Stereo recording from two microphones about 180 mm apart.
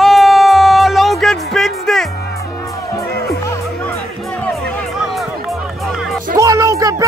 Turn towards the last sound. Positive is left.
turn(degrees=-20)  # may be behind; listen again after turning